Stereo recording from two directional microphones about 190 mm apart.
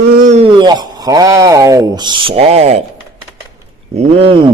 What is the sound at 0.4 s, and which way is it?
Speech, 25° right (ahead or behind).